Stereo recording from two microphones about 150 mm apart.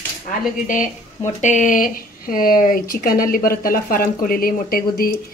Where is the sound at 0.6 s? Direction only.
60° left (ahead or behind).